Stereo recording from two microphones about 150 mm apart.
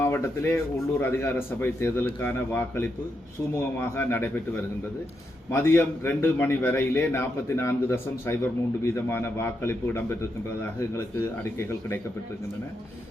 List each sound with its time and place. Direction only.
0.0 s a man's voice: 15° left (ahead or behind)